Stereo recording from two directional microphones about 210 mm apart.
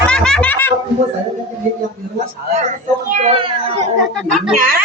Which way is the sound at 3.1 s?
35° right (ahead or behind).